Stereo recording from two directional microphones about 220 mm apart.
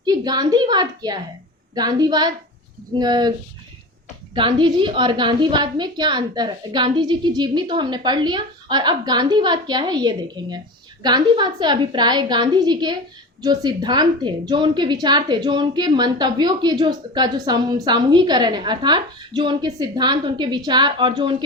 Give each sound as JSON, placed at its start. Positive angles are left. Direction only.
{"t": 0.0, "sound": "a woman's voice", "side_deg": -20}
{"t": 4.4, "sound": "a woman's voice", "side_deg": -20}